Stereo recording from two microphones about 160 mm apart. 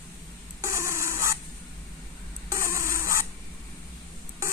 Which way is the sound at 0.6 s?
15° right (ahead or behind).